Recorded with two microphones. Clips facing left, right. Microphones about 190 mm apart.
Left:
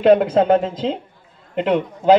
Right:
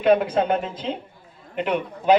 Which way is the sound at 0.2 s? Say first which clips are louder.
Left 7 dB; 90° left.